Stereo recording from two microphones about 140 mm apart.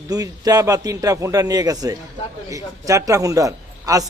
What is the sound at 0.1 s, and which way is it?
A man's voice, 25° right (ahead or behind).